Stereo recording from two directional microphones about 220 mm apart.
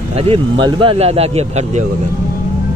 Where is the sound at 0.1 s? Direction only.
25° right (ahead or behind).